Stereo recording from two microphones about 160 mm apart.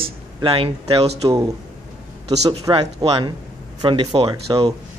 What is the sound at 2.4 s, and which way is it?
A man's voice, 25° right (ahead or behind).